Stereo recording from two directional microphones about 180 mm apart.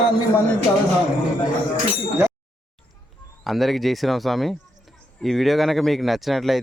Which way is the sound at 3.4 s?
Centre (ahead or behind).